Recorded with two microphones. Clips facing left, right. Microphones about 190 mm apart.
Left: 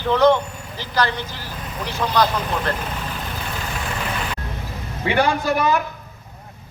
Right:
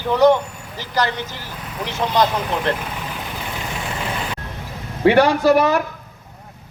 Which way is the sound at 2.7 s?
10° right (ahead or behind).